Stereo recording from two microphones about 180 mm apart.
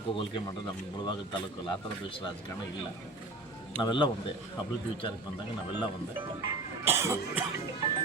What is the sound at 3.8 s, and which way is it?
Speech, 25° left (ahead or behind).